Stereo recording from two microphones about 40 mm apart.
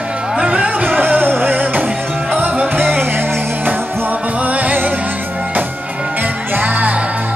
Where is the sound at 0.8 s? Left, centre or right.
Right.